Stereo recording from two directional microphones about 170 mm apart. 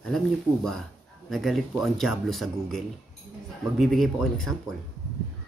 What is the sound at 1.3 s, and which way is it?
A man's voice, centre (ahead or behind).